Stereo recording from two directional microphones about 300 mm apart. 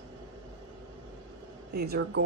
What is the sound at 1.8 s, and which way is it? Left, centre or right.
Speech, right.